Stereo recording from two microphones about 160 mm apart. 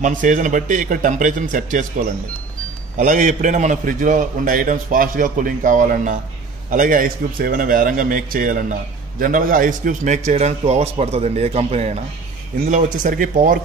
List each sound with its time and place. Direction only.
0.0 s a man's voice: 55° right (ahead or behind)
3.0 s a man's voice: 50° right (ahead or behind)
12.6 s a man's voice: 50° right (ahead or behind)